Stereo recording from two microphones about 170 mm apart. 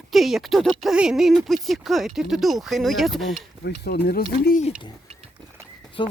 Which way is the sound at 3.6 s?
70° left (ahead or behind).